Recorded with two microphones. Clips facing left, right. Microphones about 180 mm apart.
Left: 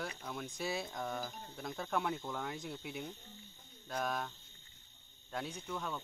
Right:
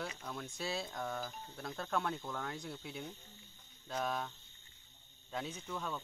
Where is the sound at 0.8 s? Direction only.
Centre (ahead or behind).